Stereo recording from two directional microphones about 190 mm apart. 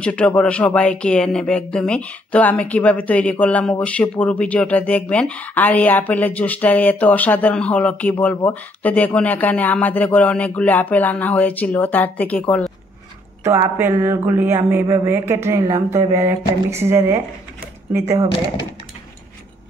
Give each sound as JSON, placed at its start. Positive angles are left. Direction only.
{"t": 0.0, "sound": "speech", "side_deg": 5}
{"t": 13.4, "sound": "speech", "side_deg": -15}